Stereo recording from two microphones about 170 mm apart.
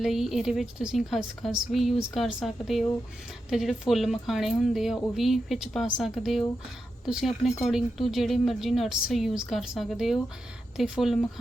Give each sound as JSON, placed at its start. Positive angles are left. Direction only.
{"t": 0.0, "sound": "a woman's voice", "side_deg": 0}